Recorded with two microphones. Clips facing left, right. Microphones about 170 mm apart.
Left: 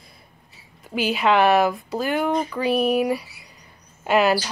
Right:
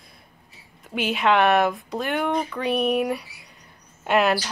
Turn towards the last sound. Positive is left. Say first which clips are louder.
# left 2 dB
turn(degrees=0)  # may be behind; listen again after turning